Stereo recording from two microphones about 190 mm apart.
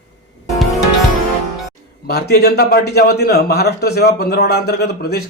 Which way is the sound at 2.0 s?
55° left (ahead or behind).